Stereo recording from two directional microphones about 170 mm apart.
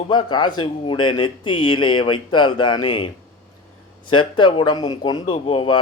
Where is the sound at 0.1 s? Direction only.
25° left (ahead or behind).